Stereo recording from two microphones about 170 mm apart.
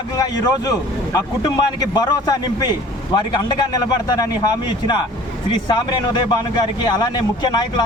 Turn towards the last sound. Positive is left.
turn(degrees=25)  # may be behind; listen again after turning